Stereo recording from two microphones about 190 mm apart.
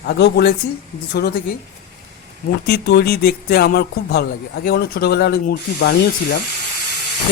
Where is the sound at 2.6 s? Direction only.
60° left (ahead or behind).